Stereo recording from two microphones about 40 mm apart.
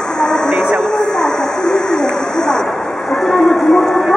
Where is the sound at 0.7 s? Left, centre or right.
Centre.